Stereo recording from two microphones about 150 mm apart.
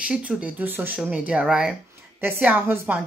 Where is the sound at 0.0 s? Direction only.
5° right (ahead or behind).